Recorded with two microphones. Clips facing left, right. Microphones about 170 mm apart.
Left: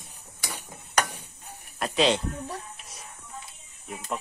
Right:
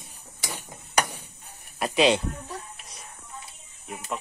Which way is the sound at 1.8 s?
10° right (ahead or behind).